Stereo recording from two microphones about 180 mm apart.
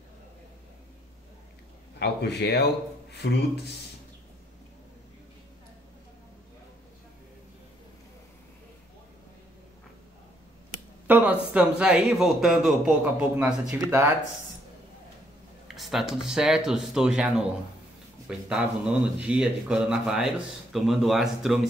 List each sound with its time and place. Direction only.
2.0 s a man's voice: 65° left (ahead or behind)
11.1 s speech: 10° right (ahead or behind)
15.7 s speech: centre (ahead or behind)